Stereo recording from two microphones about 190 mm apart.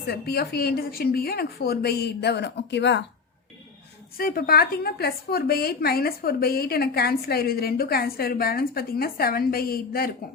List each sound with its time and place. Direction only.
0.1 s speech: 55° left (ahead or behind)
4.2 s a woman's voice: 50° left (ahead or behind)